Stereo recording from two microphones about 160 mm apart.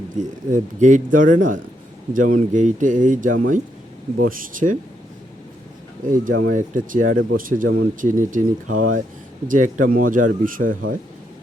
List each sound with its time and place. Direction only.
0.2 s speech: 50° right (ahead or behind)
6.1 s speech: 55° right (ahead or behind)